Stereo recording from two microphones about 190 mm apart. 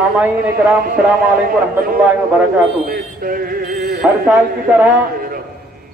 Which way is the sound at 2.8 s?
50° right (ahead or behind).